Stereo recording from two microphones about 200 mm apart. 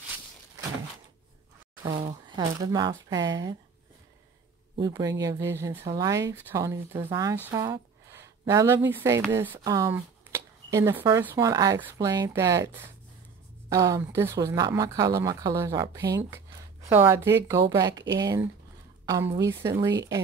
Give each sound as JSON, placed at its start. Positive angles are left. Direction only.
{"t": 2.2, "sound": "speech", "side_deg": -20}
{"t": 4.7, "sound": "speech", "side_deg": -20}